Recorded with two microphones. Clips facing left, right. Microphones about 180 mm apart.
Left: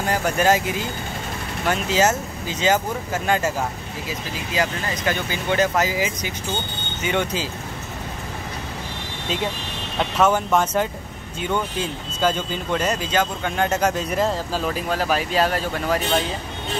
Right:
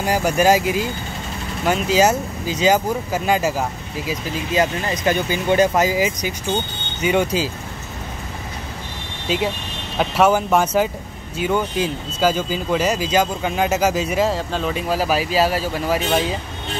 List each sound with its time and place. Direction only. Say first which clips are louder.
0.0 s speech: right 3 dB; 10° right (ahead or behind)
1.7 s speech: right 3 dB; 15° right (ahead or behind)
9.9 s speech: right 3 dB; 10° right (ahead or behind)